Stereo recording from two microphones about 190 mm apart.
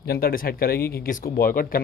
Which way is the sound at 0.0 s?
50° left (ahead or behind).